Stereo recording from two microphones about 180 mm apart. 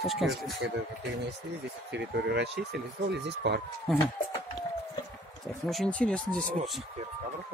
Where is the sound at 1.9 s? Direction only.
65° right (ahead or behind).